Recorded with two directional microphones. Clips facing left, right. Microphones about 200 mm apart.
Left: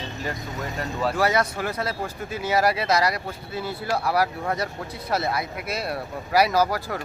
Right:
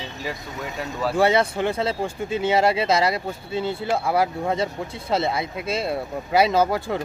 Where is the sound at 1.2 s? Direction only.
25° right (ahead or behind).